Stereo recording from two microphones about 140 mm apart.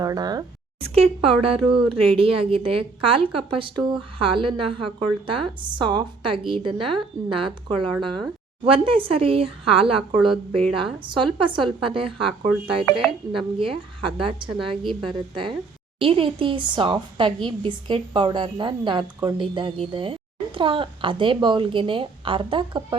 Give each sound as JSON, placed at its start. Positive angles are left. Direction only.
{"t": 0.0, "sound": "speech", "side_deg": -25}
{"t": 1.2, "sound": "speech", "side_deg": -40}